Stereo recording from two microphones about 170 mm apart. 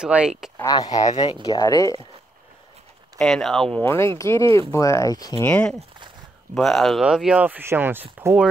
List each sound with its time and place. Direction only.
0.0 s speech: 5° right (ahead or behind)
0.6 s speech: 20° left (ahead or behind)
3.2 s speech: 5° left (ahead or behind)
3.8 s speech: 15° left (ahead or behind)
5.4 s speech: 10° left (ahead or behind); by 8.5 s 15° right (ahead or behind)